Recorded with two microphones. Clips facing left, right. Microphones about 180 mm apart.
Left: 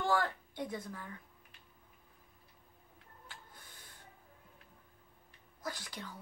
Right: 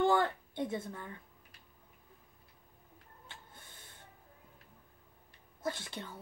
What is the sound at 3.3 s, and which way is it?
Printer, 25° right (ahead or behind).